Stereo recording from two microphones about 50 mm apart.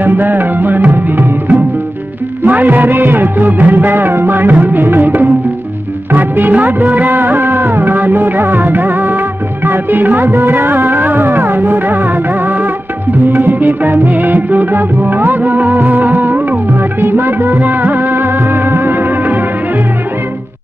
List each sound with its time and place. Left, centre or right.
0.0 s music: right
13.3 s music: right
17.0 s music of bollywood: right